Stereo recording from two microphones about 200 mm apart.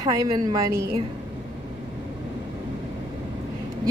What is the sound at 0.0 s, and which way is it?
A woman's voice, 20° right (ahead or behind).